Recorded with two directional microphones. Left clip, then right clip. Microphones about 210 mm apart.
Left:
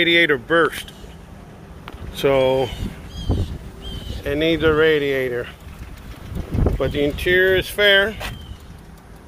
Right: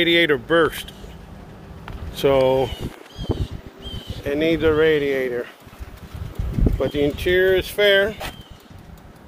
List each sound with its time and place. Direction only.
0.0 s speech: 5° right (ahead or behind)
2.1 s speech: centre (ahead or behind)
4.2 s speech: centre (ahead or behind)
6.8 s speech: 5° right (ahead or behind)